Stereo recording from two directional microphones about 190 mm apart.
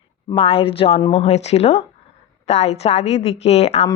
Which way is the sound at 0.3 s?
30° left (ahead or behind).